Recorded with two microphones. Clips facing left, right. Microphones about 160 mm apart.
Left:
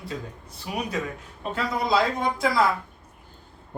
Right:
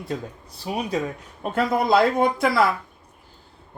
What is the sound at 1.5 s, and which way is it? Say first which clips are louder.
Speech: right 5 dB; 55° right (ahead or behind).